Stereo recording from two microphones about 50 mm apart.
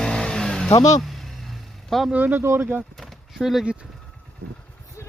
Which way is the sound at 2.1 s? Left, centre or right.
Right.